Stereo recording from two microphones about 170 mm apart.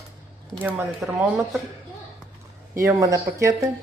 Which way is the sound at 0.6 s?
10° right (ahead or behind).